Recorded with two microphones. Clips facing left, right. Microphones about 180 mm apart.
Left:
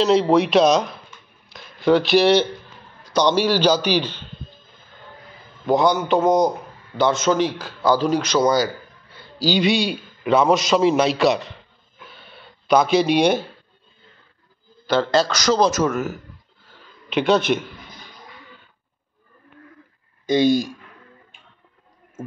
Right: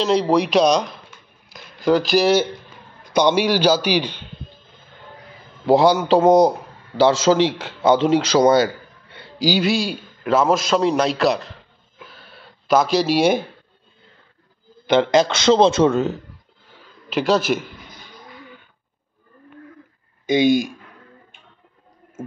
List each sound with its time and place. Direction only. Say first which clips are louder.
0.0 s a man's voice: left 1 dB; centre (ahead or behind)
1.5 s a sound: left 1 dB; centre (ahead or behind)
3.2 s a man's voice: right 1 dB; 10° right (ahead or behind)
5.7 s a man's voice: right 3 dB; 30° right (ahead or behind)
9.4 s a man's voice: even; 5° right (ahead or behind)
12.1 s a sound: even; centre (ahead or behind)
14.9 s a man's voice: right 3 dB; 20° right (ahead or behind)
17.1 s a man's voice: even; centre (ahead or behind)
20.3 s a man's voice: right 1 dB; 20° right (ahead or behind)